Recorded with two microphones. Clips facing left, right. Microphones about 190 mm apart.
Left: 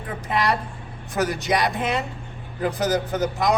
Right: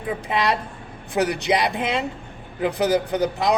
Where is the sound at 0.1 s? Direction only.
20° right (ahead or behind).